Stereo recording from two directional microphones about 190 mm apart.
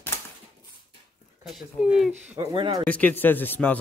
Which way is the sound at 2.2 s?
15° right (ahead or behind).